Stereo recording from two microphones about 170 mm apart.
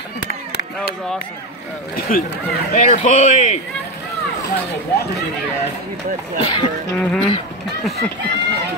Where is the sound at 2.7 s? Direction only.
50° left (ahead or behind).